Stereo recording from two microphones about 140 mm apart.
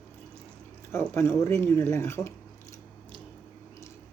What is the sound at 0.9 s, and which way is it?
Speech, 15° left (ahead or behind).